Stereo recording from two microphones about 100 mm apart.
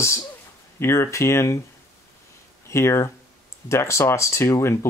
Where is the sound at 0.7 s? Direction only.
25° left (ahead or behind).